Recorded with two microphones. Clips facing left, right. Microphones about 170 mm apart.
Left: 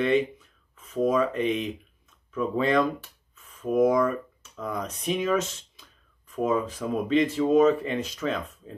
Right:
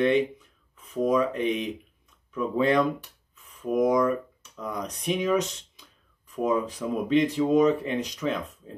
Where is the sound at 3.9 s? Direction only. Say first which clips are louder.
Right 1 dB; 5° left (ahead or behind).